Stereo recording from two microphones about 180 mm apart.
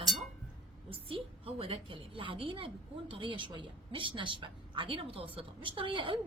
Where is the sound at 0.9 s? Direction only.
30° right (ahead or behind).